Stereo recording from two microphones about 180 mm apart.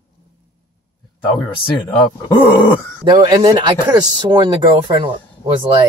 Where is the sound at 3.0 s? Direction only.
25° right (ahead or behind).